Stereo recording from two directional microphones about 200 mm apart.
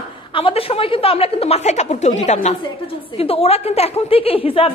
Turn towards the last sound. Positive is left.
turn(degrees=25)  # may be behind; listen again after turning